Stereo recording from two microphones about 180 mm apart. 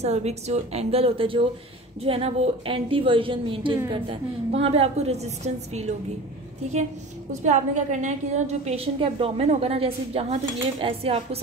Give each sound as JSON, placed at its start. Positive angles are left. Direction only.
{"t": 0.0, "sound": "a woman's voice", "side_deg": -35}
{"t": 7.4, "sound": "a woman's voice", "side_deg": -40}